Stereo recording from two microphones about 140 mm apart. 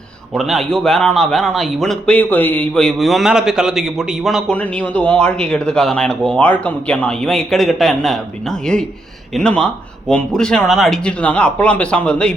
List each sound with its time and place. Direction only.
0.3 s a man's voice: centre (ahead or behind)